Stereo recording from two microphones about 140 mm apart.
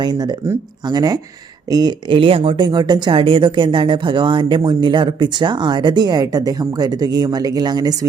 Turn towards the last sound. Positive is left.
turn(degrees=-30)  # may be behind; listen again after turning